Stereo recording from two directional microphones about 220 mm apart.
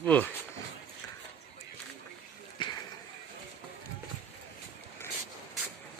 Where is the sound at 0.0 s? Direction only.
5° left (ahead or behind).